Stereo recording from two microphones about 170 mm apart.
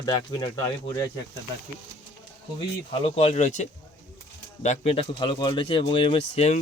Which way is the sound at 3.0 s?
35° left (ahead or behind).